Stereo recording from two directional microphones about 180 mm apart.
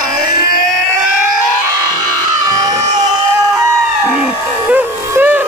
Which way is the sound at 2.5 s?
20° right (ahead or behind).